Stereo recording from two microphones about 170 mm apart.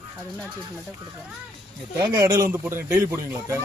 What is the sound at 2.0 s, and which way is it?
Speech, 25° right (ahead or behind).